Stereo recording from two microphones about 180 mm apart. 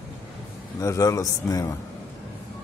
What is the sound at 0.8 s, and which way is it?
Speech, 15° left (ahead or behind).